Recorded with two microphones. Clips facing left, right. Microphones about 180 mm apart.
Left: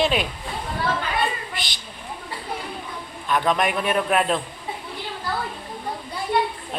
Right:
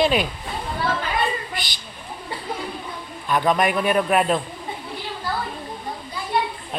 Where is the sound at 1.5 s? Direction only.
Centre (ahead or behind).